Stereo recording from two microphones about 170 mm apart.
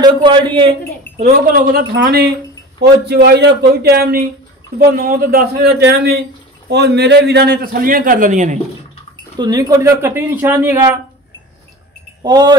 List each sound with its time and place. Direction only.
0.0 s a man's voice: 30° right (ahead or behind)
1.7 s a man's voice: 75° right (ahead or behind); by 8.5 s 45° right (ahead or behind)
9.4 s speech: 20° right (ahead or behind)
12.2 s speech: 25° right (ahead or behind)